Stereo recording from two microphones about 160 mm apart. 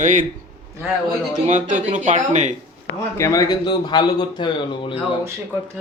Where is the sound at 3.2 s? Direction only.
20° left (ahead or behind).